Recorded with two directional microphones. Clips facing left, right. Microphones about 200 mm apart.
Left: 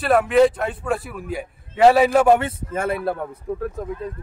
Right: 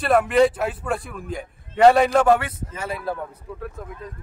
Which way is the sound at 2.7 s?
55° left (ahead or behind).